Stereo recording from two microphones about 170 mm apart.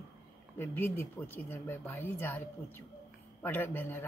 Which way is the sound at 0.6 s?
10° left (ahead or behind).